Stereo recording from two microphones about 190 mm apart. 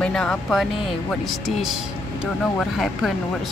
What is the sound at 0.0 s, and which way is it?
Speech, 5° left (ahead or behind).